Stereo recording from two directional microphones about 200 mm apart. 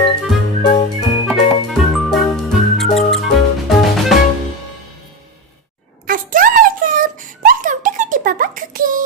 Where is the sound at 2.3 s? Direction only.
Centre (ahead or behind).